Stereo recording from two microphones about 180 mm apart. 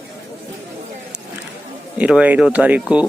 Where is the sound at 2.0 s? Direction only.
5° right (ahead or behind).